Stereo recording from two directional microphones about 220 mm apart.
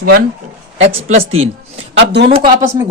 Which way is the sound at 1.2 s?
65° right (ahead or behind).